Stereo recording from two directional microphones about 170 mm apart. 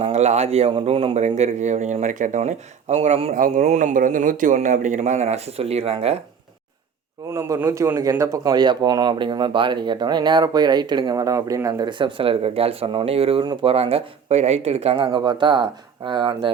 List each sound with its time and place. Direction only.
0.0 s speech: 40° right (ahead or behind)
3.3 s speech: 50° right (ahead or behind); by 6.1 s 35° right (ahead or behind)
7.3 s speech: 15° right (ahead or behind)